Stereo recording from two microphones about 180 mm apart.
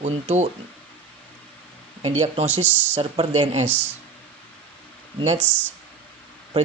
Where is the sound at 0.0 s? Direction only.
35° right (ahead or behind).